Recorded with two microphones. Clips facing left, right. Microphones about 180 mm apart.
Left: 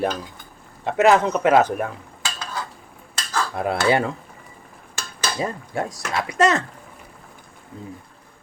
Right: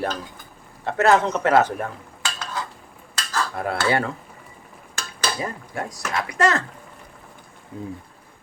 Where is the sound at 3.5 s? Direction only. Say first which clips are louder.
Left 3 dB; 20° left (ahead or behind).